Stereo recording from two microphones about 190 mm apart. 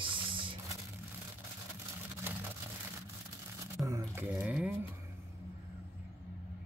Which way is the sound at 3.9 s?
15° right (ahead or behind).